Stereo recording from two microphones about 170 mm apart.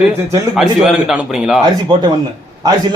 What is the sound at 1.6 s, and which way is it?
Speech, 25° right (ahead or behind).